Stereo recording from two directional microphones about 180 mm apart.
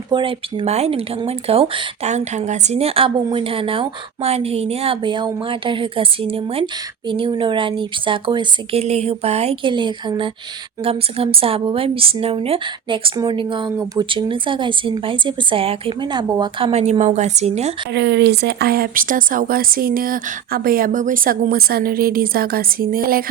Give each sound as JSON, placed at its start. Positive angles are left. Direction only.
{"t": 0.1, "sound": "a woman's voice", "side_deg": -25}
{"t": 17.9, "sound": "speech", "side_deg": -70}